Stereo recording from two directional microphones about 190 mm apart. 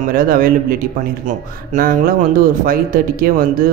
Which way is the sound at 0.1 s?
50° right (ahead or behind).